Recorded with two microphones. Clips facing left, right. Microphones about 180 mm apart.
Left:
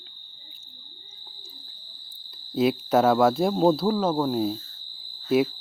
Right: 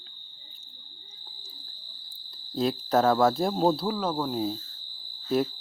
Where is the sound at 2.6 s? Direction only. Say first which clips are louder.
Left 3 dB; 5° left (ahead or behind).